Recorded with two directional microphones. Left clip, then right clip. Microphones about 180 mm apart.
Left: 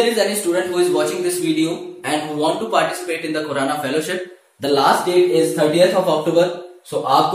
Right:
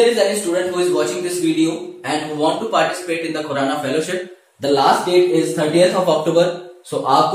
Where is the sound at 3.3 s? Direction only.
20° left (ahead or behind).